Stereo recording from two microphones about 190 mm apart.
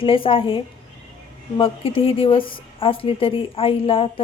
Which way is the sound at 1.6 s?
30° left (ahead or behind).